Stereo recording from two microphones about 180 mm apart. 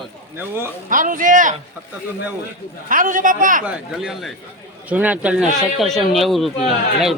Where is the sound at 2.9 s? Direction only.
45° right (ahead or behind).